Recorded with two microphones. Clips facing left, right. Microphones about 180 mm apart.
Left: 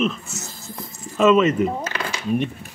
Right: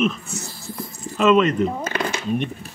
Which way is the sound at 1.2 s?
5° left (ahead or behind).